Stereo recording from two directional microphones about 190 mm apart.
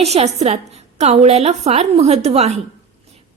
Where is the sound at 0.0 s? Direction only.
35° right (ahead or behind).